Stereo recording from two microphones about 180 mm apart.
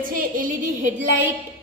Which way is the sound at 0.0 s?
50° right (ahead or behind).